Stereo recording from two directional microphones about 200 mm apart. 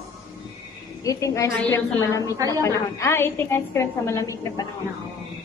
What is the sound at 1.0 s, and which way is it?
A woman's voice, 15° left (ahead or behind).